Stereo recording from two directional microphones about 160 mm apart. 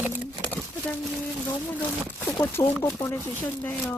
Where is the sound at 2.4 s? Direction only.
15° left (ahead or behind).